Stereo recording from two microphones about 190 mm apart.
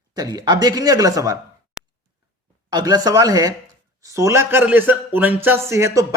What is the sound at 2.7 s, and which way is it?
Speech, 20° right (ahead or behind).